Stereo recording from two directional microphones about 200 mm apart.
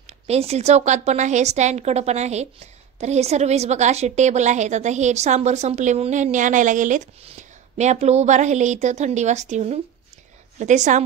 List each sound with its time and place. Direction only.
0.0 s a woman's voice: 30° right (ahead or behind)